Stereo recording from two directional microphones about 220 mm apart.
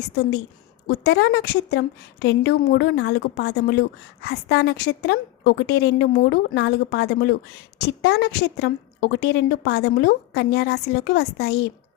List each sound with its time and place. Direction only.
0.9 s a woman's voice: 50° left (ahead or behind)